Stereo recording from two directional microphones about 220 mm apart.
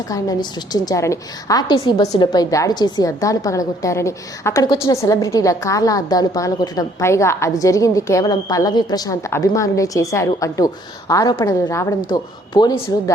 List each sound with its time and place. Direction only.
0.1 s a woman's voice: 15° left (ahead or behind)